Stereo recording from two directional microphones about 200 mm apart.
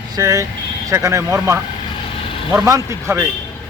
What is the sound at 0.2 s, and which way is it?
A man's voice, 15° right (ahead or behind).